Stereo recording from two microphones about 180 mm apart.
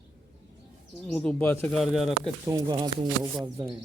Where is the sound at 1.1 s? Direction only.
5° left (ahead or behind).